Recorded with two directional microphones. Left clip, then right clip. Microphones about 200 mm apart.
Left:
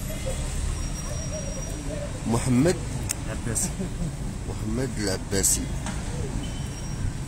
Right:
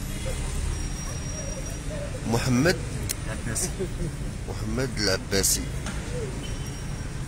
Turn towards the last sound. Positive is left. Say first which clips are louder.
# right 3 dB
turn(degrees=5)  # may be behind; listen again after turning